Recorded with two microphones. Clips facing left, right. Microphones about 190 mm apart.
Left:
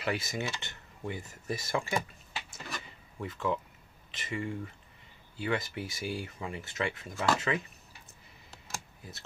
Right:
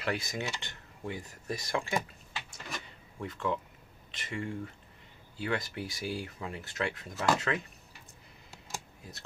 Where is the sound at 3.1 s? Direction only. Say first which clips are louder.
Left 1 dB; centre (ahead or behind).